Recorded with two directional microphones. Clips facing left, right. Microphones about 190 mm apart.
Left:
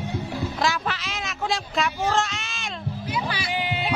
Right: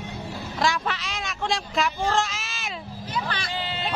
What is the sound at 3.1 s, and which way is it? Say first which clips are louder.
Speech: left 1 dB; 10° left (ahead or behind).